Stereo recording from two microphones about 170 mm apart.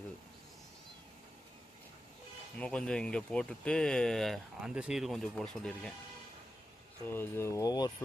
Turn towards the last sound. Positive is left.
turn(degrees=20)  # may be behind; listen again after turning